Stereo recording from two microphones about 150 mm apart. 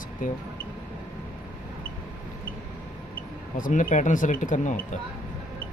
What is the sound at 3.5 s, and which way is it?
Speech, 60° left (ahead or behind).